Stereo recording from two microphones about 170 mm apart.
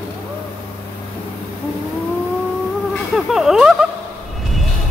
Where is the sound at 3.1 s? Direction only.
Centre (ahead or behind).